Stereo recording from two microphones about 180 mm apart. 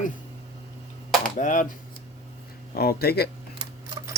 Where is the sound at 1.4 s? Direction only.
45° left (ahead or behind).